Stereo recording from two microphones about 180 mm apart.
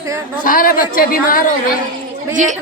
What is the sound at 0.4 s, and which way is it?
A woman's voice, 50° left (ahead or behind).